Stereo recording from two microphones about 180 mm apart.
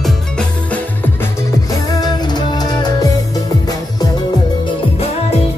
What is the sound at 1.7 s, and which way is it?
Music, 20° left (ahead or behind).